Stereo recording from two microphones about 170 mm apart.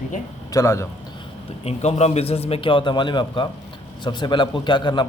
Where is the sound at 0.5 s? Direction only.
15° left (ahead or behind).